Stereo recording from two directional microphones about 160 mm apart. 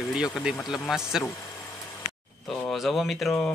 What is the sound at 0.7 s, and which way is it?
Speech, centre (ahead or behind).